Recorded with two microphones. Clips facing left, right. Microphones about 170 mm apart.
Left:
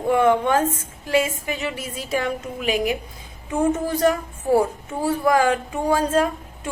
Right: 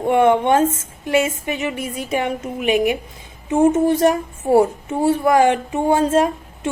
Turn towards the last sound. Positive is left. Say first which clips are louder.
# right 4 dB
turn(degrees=-25)  # may be behind; listen again after turning